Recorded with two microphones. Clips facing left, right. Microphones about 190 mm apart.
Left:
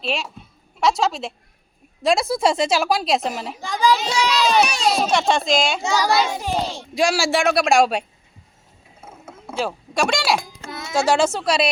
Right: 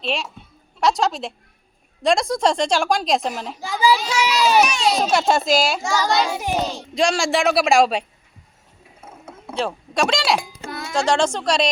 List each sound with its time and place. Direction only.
0.0 s a woman's voice: centre (ahead or behind)
4.6 s a child's voice: 35° left (ahead or behind)
4.9 s a woman's voice: centre (ahead or behind)
5.8 s child singing: 20° left (ahead or behind)
6.9 s a woman's voice: 5° left (ahead or behind)
9.2 s speech: 5° left (ahead or behind)
10.7 s music: 20° left (ahead or behind)
10.9 s a woman's voice: 5° left (ahead or behind)